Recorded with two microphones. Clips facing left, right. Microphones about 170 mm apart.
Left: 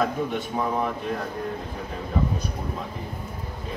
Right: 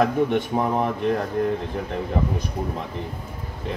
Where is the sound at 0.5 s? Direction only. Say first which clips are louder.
Right 2 dB; 45° right (ahead or behind).